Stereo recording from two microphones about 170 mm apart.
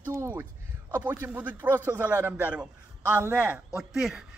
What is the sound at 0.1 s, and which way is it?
A man's voice, 15° right (ahead or behind).